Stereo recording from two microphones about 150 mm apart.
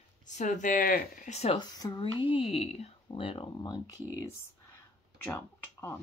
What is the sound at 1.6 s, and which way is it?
Speech, 30° left (ahead or behind).